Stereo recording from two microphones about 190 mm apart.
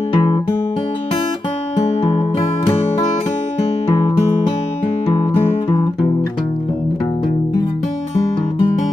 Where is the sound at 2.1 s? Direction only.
30° left (ahead or behind).